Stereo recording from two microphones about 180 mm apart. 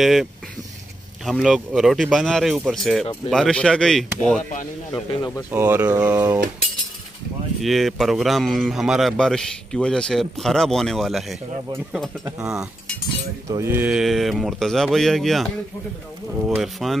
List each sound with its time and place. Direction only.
0.0 s a man's voice: centre (ahead or behind)
4.9 s speech: 25° left (ahead or behind)
5.5 s speech: 10° right (ahead or behind)
7.6 s a man's voice: centre (ahead or behind)
13.5 s a man's voice: 15° right (ahead or behind)